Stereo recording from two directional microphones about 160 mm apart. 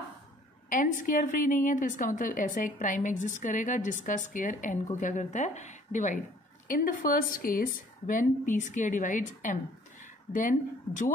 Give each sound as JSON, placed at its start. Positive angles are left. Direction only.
{"t": 0.7, "sound": "a woman's voice", "side_deg": 55}